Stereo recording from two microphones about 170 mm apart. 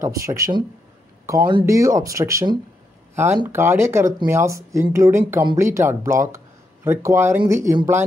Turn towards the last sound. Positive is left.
turn(degrees=-15)  # may be behind; listen again after turning